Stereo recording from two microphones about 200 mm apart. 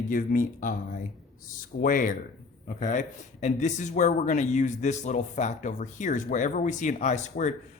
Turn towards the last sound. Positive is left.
turn(degrees=35)  # may be behind; listen again after turning